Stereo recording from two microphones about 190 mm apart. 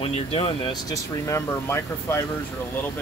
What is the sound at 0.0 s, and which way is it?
Speech, 30° left (ahead or behind).